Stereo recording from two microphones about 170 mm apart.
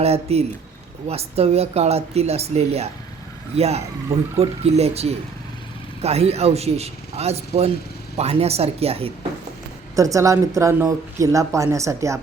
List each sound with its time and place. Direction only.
0.0 s speech: 40° right (ahead or behind)
9.9 s speech: 20° right (ahead or behind)